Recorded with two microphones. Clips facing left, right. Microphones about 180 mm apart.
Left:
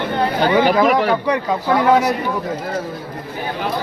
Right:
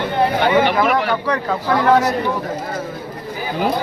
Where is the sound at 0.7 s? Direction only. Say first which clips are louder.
Left 3 dB; 40° left (ahead or behind).